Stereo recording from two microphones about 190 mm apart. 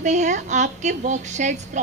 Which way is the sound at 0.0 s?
40° right (ahead or behind).